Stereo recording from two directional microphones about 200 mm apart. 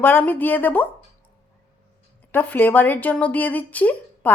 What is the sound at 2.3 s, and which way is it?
A woman's voice, 10° left (ahead or behind).